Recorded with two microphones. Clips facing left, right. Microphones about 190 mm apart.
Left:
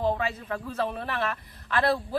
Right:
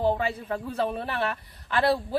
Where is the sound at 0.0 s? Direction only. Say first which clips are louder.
Right 2 dB; 30° right (ahead or behind).